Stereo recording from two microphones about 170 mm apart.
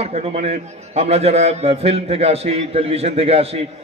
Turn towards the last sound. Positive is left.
turn(degrees=-35)  # may be behind; listen again after turning